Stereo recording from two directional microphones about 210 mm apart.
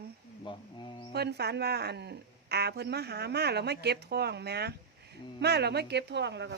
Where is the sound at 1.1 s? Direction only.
50° right (ahead or behind).